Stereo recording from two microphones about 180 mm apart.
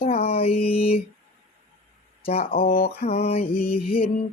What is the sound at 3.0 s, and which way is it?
Mantra, 35° left (ahead or behind).